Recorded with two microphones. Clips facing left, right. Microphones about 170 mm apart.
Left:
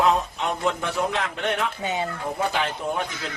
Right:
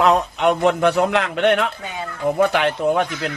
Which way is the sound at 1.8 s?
20° left (ahead or behind).